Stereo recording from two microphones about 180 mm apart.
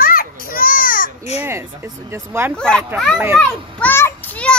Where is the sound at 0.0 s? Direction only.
55° left (ahead or behind).